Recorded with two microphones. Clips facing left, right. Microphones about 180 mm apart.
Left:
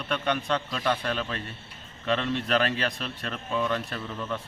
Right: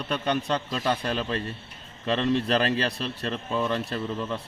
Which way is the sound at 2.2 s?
35° right (ahead or behind).